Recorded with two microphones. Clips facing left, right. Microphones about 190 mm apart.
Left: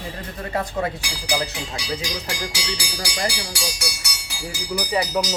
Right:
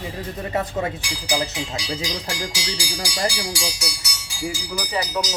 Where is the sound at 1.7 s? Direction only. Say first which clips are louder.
Right 1 dB; 65° left (ahead or behind).